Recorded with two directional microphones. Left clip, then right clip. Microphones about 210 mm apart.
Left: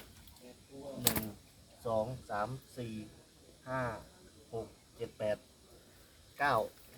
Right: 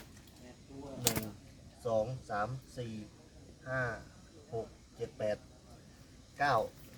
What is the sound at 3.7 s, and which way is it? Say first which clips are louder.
Speech: right 1 dB; centre (ahead or behind).